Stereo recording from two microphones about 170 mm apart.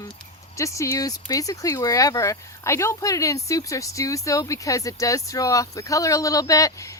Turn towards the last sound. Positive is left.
turn(degrees=20)  # may be behind; listen again after turning